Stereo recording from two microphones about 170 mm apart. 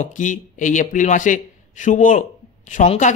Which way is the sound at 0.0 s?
50° left (ahead or behind).